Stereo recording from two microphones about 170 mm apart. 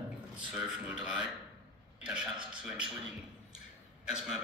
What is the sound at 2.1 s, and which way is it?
Speech, 5° right (ahead or behind).